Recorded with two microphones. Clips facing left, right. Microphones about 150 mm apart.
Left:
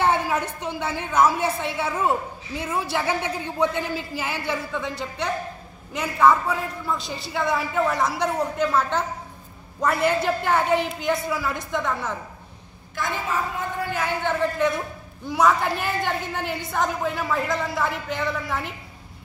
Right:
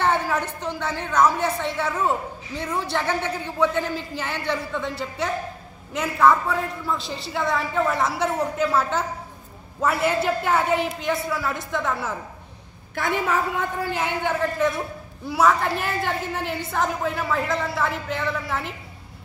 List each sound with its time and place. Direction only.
0.0 s a woman's voice: 10° left (ahead or behind)
12.9 s a woman's voice: 60° right (ahead or behind)
14.6 s a woman's voice: centre (ahead or behind)